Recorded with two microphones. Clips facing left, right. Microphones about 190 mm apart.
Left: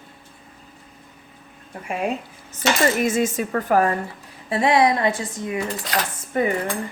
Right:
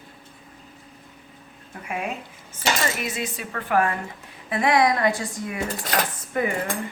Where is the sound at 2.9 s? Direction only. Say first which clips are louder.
Left 9 dB; 45° left (ahead or behind).